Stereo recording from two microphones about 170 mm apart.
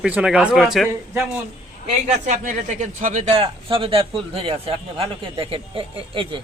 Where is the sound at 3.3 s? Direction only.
30° right (ahead or behind).